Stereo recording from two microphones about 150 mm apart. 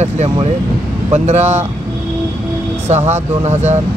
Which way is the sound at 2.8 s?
45° right (ahead or behind).